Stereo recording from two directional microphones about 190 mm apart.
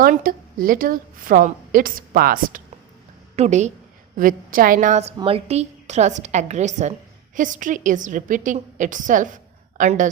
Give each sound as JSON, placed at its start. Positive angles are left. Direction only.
{"t": 0.0, "sound": "a woman's voice", "side_deg": -50}
{"t": 3.3, "sound": "a woman's voice", "side_deg": -35}